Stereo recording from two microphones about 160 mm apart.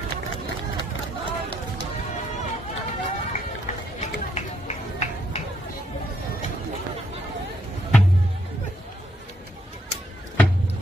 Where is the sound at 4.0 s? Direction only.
45° left (ahead or behind).